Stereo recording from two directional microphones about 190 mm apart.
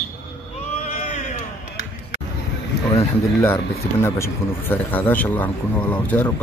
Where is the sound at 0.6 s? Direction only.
40° left (ahead or behind).